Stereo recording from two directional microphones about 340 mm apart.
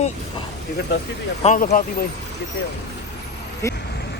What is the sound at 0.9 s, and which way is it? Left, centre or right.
Speech, left.